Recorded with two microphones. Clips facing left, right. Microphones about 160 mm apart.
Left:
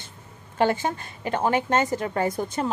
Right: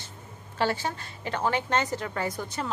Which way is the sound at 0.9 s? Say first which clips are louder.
Left 5 dB; 20° left (ahead or behind).